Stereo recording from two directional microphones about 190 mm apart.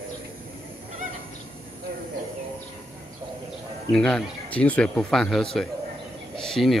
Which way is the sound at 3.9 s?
5° left (ahead or behind).